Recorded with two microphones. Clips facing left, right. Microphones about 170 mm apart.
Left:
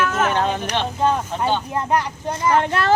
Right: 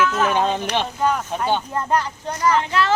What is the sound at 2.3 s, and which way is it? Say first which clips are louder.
Speech: right 1 dB; 25° left (ahead or behind).